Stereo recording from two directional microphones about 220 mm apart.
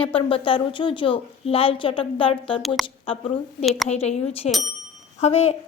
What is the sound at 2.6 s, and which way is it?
Speech, centre (ahead or behind).